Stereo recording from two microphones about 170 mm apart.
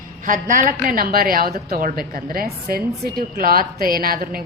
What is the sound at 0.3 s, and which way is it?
A woman's voice, 50° right (ahead or behind).